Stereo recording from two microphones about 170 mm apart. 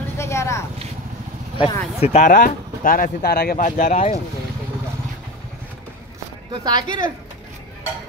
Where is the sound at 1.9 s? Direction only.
40° left (ahead or behind).